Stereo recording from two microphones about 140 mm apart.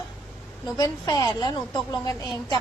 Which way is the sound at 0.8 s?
30° left (ahead or behind).